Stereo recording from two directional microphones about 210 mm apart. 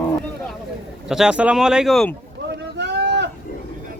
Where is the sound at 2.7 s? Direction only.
55° right (ahead or behind).